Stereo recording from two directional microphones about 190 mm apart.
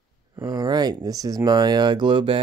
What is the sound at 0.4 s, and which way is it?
Speech, 20° right (ahead or behind).